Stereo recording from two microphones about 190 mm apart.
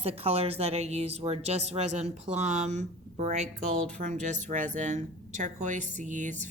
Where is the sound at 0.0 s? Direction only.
30° right (ahead or behind).